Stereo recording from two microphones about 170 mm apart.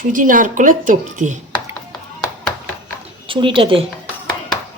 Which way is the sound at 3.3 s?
30° right (ahead or behind).